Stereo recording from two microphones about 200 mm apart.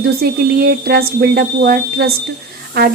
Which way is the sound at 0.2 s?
50° right (ahead or behind).